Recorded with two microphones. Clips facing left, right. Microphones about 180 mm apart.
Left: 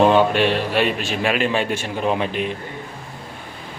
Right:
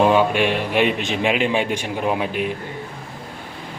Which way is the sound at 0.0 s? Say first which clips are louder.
Left 1 dB; 10° right (ahead or behind).